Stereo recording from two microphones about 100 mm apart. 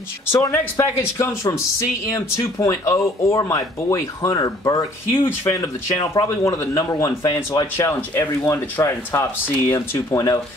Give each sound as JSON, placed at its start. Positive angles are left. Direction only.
{"t": 0.4, "sound": "speech", "side_deg": 25}
{"t": 7.7, "sound": "speech", "side_deg": 20}